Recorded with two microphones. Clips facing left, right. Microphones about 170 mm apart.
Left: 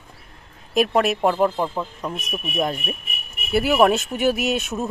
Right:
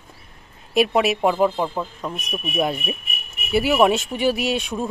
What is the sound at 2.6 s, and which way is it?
A woman's voice, 10° right (ahead or behind).